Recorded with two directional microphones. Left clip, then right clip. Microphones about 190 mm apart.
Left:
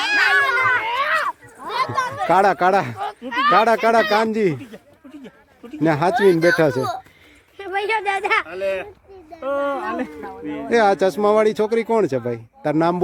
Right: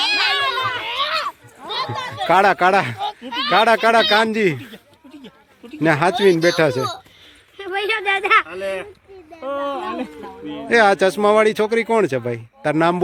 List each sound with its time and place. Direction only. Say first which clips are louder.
0.0 s a sound: left 2 dB; 5° left (ahead or behind)
2.1 s speech: right 2 dB; 5° left (ahead or behind)
6.3 s speech: even; 25° left (ahead or behind)
7.6 s a sound: even; 35° right (ahead or behind)
9.4 s speech: left 2 dB; 30° right (ahead or behind)
9.8 s a man's voice: left 1 dB; 15° right (ahead or behind)
10.7 s speech: right 2 dB; 5° left (ahead or behind)